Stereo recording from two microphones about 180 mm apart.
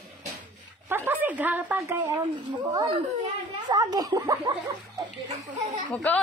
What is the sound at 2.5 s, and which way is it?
Speech, 25° right (ahead or behind).